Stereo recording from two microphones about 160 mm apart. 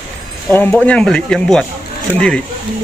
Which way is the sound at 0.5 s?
10° left (ahead or behind).